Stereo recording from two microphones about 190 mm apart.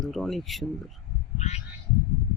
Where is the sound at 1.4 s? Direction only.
35° left (ahead or behind).